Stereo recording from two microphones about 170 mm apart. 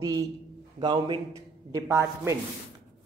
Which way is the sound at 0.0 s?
20° right (ahead or behind).